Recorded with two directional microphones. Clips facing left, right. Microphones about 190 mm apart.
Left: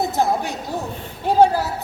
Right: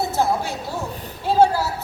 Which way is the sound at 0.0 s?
15° left (ahead or behind).